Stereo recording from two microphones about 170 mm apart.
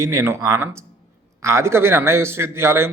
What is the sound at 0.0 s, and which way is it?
Speech, 15° right (ahead or behind).